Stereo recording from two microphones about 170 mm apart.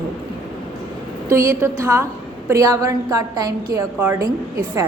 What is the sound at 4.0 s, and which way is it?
Speech, 10° right (ahead or behind).